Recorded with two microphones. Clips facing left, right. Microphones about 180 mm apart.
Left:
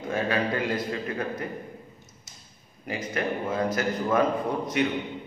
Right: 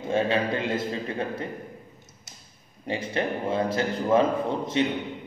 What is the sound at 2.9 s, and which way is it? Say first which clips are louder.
A man's voice: right 2 dB; 30° right (ahead or behind).